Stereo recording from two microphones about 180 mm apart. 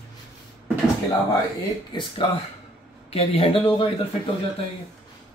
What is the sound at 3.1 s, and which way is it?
Speech, 35° left (ahead or behind).